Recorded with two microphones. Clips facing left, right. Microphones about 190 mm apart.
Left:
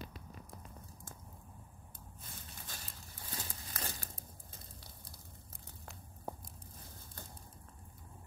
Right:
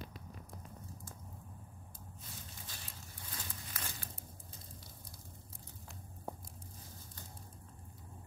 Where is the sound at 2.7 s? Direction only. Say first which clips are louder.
Left 5 dB; 50° left (ahead or behind).